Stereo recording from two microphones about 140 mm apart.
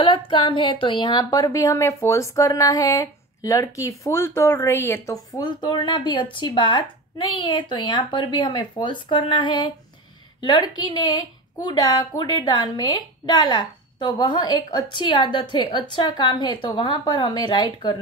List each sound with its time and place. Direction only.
0.0 s a woman's voice: 35° left (ahead or behind)
10.7 s a woman's voice: 30° left (ahead or behind)